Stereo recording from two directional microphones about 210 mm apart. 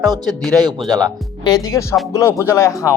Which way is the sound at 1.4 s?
15° left (ahead or behind).